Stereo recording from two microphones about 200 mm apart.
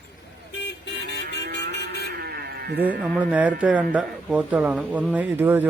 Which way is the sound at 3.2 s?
5° right (ahead or behind).